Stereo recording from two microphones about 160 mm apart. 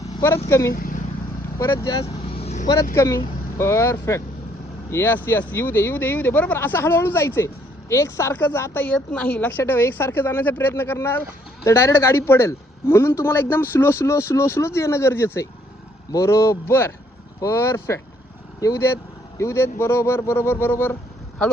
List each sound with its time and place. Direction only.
0.4 s speech: 20° left (ahead or behind)
0.7 s speech: 65° left (ahead or behind)
1.5 s speech: 20° left (ahead or behind)
2.3 s vehicle: 40° left (ahead or behind)
2.9 s speech: 15° left (ahead or behind)